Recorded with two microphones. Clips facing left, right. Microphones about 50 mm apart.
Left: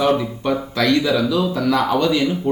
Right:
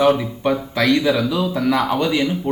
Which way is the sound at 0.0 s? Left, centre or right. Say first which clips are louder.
Right 2 dB; centre.